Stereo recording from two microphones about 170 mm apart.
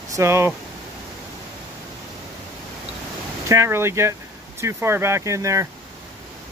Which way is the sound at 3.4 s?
15° right (ahead or behind).